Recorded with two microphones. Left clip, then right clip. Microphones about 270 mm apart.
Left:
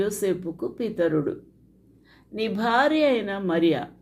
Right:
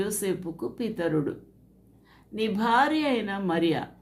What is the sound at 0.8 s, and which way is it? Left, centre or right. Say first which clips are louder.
Speech: left 7 dB; centre.